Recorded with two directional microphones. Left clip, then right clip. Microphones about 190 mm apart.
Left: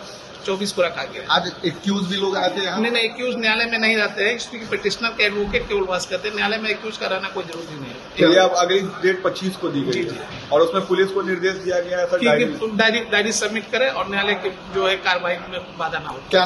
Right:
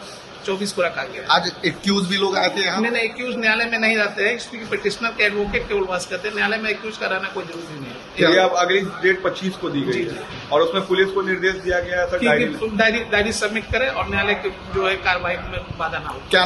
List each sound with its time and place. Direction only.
0.5 s a man's voice: 5° right (ahead or behind)
1.2 s a man's voice: 25° right (ahead or behind)
2.8 s a man's voice: centre (ahead or behind)
8.3 s speech: 20° left (ahead or behind)
10.7 s a man's voice: 15° left (ahead or behind)
12.2 s a man's voice: centre (ahead or behind)
16.3 s a man's voice: 25° right (ahead or behind)